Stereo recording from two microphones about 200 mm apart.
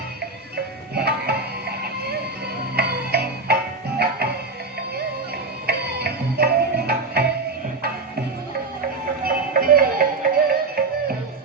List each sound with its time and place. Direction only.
0.9 s music: 50° right (ahead or behind)
2.7 s music: 50° right (ahead or behind)
5.6 s music: 55° right (ahead or behind)
9.2 s music: 45° right (ahead or behind)